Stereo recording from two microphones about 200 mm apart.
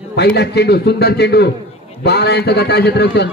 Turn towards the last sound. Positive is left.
turn(degrees=55)  # may be behind; listen again after turning